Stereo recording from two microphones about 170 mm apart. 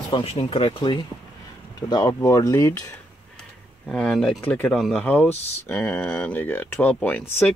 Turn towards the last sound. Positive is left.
turn(degrees=10)  # may be behind; listen again after turning